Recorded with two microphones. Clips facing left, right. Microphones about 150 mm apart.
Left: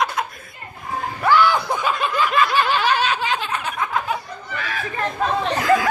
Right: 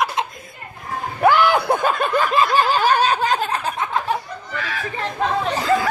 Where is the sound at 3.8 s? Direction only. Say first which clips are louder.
Even; 30° right (ahead or behind).